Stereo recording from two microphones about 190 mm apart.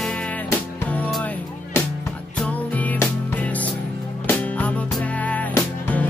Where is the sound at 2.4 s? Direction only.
10° left (ahead or behind).